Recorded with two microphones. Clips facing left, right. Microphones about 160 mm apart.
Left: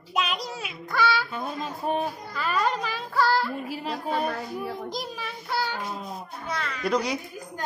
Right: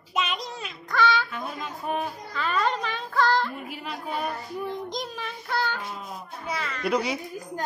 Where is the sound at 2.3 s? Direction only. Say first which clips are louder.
Even; 5° left (ahead or behind).